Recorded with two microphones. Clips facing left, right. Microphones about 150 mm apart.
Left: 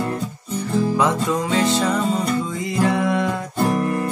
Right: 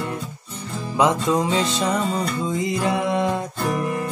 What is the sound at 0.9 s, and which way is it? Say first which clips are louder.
Music: right 1 dB; 20° right (ahead or behind).